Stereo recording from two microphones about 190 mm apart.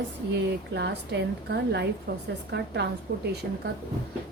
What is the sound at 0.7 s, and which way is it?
A woman's voice, 65° right (ahead or behind).